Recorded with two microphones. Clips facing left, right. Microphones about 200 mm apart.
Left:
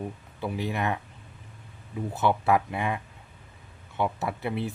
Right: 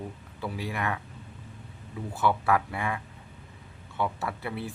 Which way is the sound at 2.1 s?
20° left (ahead or behind).